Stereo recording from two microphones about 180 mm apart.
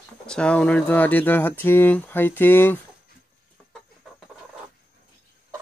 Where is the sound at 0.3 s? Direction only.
5° left (ahead or behind).